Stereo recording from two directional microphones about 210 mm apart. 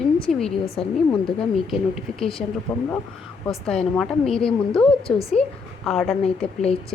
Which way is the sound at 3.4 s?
5° left (ahead or behind).